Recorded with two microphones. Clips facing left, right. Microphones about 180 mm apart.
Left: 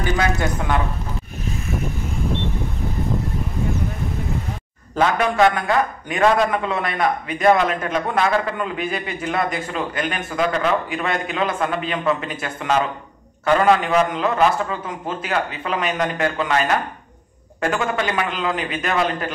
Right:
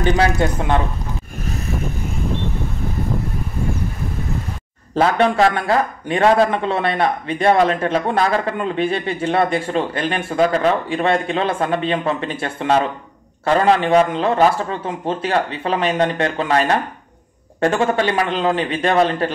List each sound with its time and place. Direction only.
0.0 s speech: 30° right (ahead or behind)
4.9 s speech: 30° right (ahead or behind)